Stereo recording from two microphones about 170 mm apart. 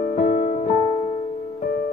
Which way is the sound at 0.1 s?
55° left (ahead or behind).